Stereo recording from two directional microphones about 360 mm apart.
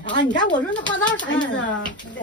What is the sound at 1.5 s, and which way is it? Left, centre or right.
Speech, left.